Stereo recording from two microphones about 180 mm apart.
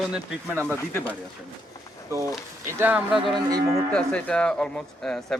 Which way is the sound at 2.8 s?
5° right (ahead or behind).